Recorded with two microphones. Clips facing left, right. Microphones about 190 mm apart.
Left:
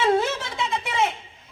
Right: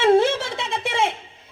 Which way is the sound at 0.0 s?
30° right (ahead or behind).